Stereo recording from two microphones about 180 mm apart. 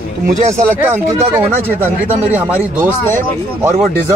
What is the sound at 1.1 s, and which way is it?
Speech, 15° right (ahead or behind).